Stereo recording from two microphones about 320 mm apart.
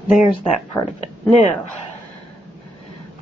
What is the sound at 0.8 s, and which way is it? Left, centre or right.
Speech, centre.